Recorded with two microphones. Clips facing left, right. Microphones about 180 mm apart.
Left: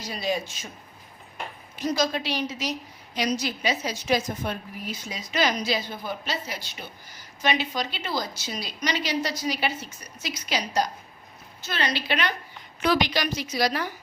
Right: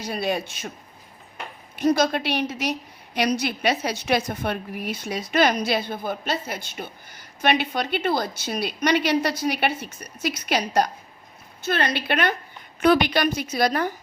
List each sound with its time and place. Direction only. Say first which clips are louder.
0.0 s a woman's voice: right 3 dB; 60° right (ahead or behind)
1.7 s a woman's voice: right 5 dB; 60° right (ahead or behind)